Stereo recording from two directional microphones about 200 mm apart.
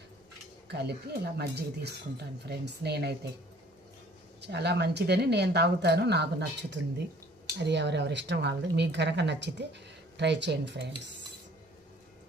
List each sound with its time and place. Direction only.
0.7 s speech: 55° right (ahead or behind)
4.4 s speech: 55° right (ahead or behind)